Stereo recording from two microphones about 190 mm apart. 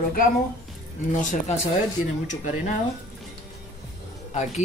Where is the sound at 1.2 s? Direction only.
40° left (ahead or behind).